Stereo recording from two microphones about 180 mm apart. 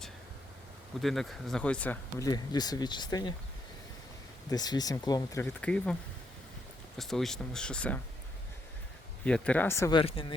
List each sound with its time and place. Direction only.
1.0 s speech: centre (ahead or behind)
2.1 s speech: 20° left (ahead or behind)
4.5 s speech: 20° left (ahead or behind)
5.4 s speech: 5° left (ahead or behind)
7.0 s speech: centre (ahead or behind)
9.2 s a man's voice: 5° left (ahead or behind)
9.9 s speech: 30° left (ahead or behind)